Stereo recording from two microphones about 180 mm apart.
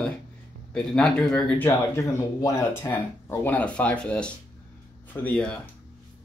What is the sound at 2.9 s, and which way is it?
Speech, 10° left (ahead or behind).